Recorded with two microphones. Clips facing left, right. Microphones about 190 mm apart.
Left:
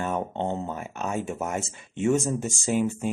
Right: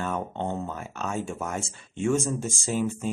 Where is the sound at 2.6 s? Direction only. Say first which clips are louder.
Left 3 dB; 15° left (ahead or behind).